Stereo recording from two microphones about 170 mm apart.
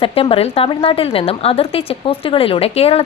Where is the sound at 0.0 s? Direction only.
35° left (ahead or behind).